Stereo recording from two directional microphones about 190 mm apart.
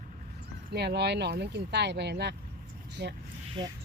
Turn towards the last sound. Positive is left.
turn(degrees=-65)  # may be behind; listen again after turning